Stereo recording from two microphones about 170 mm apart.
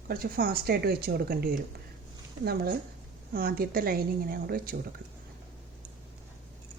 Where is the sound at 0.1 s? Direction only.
60° right (ahead or behind).